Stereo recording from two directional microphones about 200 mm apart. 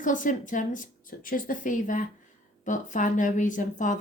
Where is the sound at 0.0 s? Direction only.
40° left (ahead or behind).